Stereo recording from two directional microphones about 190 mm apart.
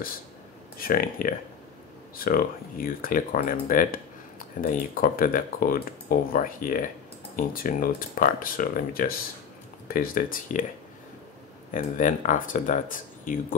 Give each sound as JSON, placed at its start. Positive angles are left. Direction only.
{"t": 0.7, "sound": "speech", "side_deg": 50}
{"t": 11.7, "sound": "speech", "side_deg": 45}